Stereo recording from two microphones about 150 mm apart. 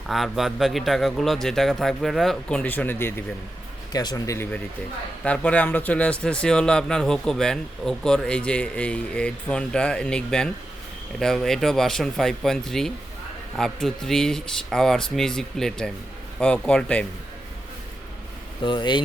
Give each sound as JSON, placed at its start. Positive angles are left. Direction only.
{"t": 0.1, "sound": "a man's voice", "side_deg": 0}
{"t": 3.9, "sound": "speech", "side_deg": 25}
{"t": 5.2, "sound": "a man's voice", "side_deg": 10}
{"t": 18.6, "sound": "speech", "side_deg": 30}